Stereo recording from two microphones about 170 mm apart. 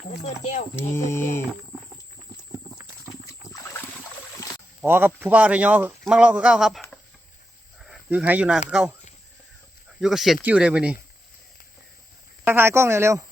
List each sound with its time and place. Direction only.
0.1 s speech: 40° left (ahead or behind)
0.8 s speech: 15° left (ahead or behind)
3.5 s boat: 15° left (ahead or behind)
4.8 s speech: 10° right (ahead or behind)
10.0 s speech: centre (ahead or behind)
12.5 s speech: 15° right (ahead or behind)